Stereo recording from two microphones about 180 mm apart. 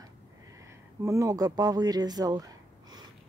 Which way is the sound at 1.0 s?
15° right (ahead or behind).